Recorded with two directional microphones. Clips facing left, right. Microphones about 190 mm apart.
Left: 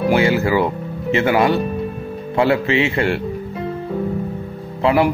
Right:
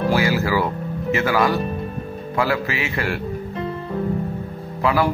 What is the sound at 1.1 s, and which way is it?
Speech, 25° left (ahead or behind).